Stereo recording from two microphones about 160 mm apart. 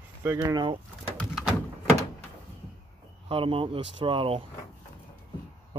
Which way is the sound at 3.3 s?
35° right (ahead or behind).